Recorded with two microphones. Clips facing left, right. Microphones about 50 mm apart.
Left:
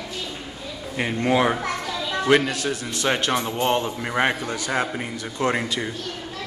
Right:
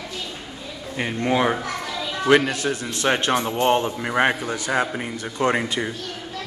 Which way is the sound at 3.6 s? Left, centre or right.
Centre.